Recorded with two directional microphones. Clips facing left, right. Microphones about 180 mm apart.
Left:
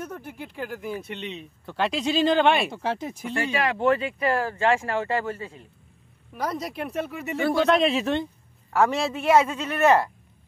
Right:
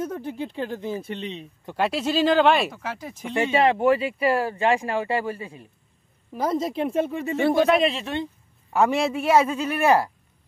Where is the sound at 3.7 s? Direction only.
10° right (ahead or behind).